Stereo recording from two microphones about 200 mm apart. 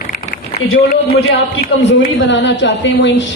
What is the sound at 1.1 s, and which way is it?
A woman's voice, 55° left (ahead or behind).